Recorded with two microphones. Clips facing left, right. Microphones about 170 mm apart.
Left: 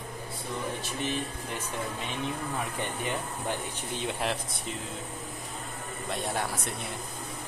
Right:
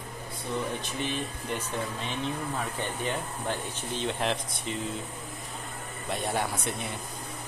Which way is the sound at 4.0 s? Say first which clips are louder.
Right 2 dB; 5° left (ahead or behind).